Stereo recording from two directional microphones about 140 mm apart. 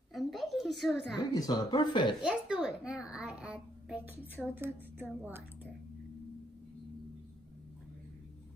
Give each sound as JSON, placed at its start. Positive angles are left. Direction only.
{"t": 0.1, "sound": "a sound", "side_deg": 0}
{"t": 1.1, "sound": "speech", "side_deg": 30}
{"t": 2.2, "sound": "a child's voice", "side_deg": -5}